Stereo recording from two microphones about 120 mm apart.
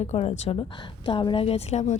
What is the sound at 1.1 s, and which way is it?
Speech, 45° left (ahead or behind).